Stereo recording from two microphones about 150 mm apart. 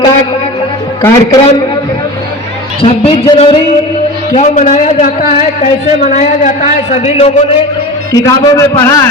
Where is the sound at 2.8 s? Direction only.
35° left (ahead or behind).